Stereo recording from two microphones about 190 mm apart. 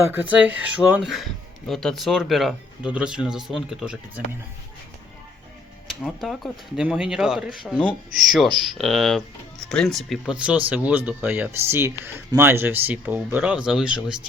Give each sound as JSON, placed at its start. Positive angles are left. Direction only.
{"t": 0.0, "sound": "speech", "side_deg": -10}
{"t": 5.9, "sound": "speech", "side_deg": 0}